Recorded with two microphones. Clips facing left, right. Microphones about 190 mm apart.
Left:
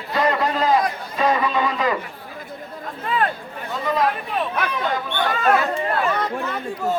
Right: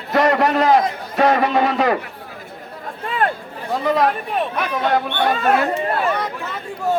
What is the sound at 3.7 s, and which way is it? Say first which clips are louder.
Speech: right 4 dB; 65° right (ahead or behind).